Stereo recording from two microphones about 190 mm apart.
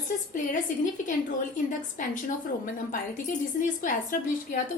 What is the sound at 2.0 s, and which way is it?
Speech, 45° left (ahead or behind).